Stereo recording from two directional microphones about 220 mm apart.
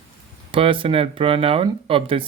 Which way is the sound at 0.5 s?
25° right (ahead or behind).